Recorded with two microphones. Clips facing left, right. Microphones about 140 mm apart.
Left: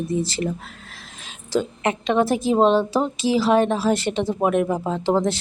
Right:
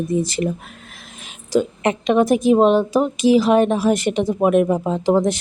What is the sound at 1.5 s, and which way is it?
Speech, 20° right (ahead or behind).